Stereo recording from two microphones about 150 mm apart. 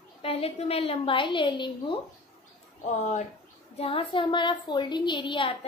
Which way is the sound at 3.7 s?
40° left (ahead or behind).